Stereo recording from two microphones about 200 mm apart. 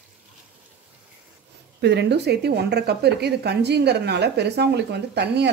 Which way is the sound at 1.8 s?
55° right (ahead or behind).